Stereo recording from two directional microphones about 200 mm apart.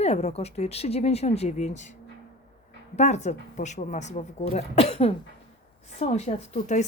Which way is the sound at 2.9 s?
35° left (ahead or behind).